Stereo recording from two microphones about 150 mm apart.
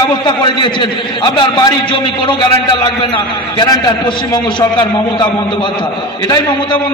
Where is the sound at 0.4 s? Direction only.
30° left (ahead or behind).